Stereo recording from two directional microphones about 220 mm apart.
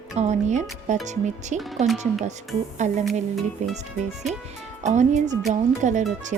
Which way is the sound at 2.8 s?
35° right (ahead or behind).